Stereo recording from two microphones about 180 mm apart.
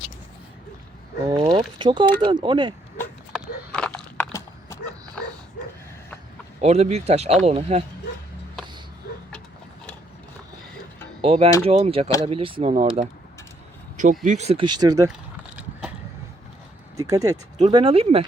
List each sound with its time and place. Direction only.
1.3 s speech: 25° right (ahead or behind)
3.7 s a sound: 5° left (ahead or behind)
6.6 s speech: 35° right (ahead or behind)
11.2 s speech: 35° right (ahead or behind)
13.9 s a sound: 45° right (ahead or behind)
14.3 s speech: 40° right (ahead or behind); by 15.1 s 20° right (ahead or behind)
17.0 s speech: 20° right (ahead or behind)
17.7 s speech: 30° right (ahead or behind)